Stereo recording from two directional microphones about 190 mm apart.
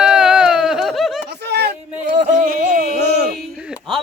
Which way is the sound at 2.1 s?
45° right (ahead or behind).